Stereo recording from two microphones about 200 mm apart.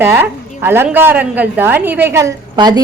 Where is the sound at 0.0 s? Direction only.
10° right (ahead or behind).